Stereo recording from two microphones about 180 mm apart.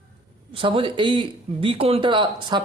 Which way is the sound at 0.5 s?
30° right (ahead or behind).